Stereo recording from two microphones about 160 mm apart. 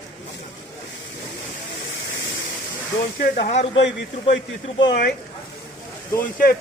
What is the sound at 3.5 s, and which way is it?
Speech, 45° left (ahead or behind).